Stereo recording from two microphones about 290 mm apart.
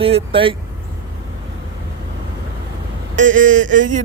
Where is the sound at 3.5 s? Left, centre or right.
Right.